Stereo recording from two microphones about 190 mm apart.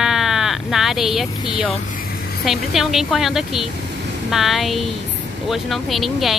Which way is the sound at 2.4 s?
Centre (ahead or behind).